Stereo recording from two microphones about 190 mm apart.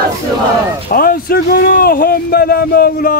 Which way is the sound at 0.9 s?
50° left (ahead or behind).